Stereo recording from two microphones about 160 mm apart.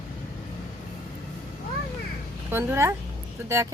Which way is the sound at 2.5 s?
15° right (ahead or behind).